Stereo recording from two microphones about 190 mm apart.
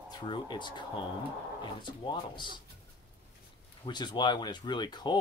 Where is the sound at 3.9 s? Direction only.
20° left (ahead or behind).